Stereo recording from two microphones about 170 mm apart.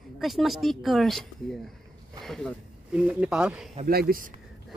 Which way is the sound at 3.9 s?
60° right (ahead or behind).